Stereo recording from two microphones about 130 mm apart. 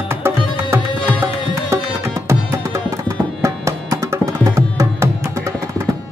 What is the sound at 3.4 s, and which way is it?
Music, 25° right (ahead or behind).